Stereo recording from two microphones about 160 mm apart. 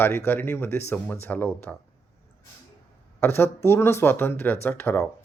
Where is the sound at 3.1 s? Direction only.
15° left (ahead or behind).